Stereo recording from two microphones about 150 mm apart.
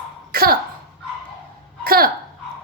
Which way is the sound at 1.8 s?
85° right.